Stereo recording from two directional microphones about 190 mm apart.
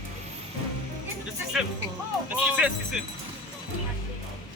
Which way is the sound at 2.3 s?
5° right (ahead or behind).